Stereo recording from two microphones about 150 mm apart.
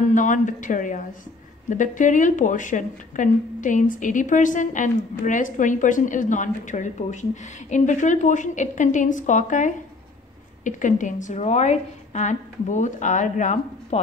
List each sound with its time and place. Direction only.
0.1 s a woman's voice: 60° left (ahead or behind)